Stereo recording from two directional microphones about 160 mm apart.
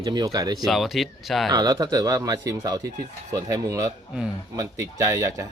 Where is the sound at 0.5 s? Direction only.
Centre (ahead or behind).